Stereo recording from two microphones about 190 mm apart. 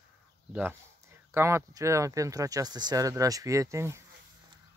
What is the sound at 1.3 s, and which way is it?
Speech, 15° right (ahead or behind).